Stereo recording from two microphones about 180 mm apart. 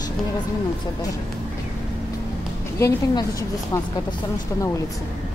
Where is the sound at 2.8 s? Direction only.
15° left (ahead or behind).